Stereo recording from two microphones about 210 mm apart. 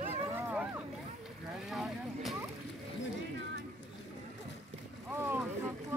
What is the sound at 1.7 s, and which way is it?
Boat, centre (ahead or behind).